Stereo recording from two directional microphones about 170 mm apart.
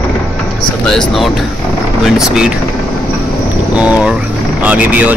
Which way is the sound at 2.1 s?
5° right (ahead or behind).